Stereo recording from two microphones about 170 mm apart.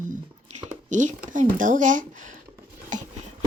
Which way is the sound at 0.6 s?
45° right (ahead or behind).